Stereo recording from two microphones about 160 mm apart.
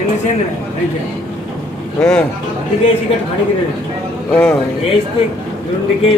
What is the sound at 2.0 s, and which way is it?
Speech, 5° left (ahead or behind).